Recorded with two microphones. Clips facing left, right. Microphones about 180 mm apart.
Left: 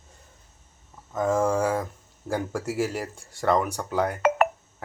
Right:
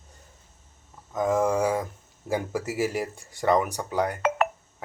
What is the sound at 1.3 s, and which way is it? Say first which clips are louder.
Speech: even; centre (ahead or behind).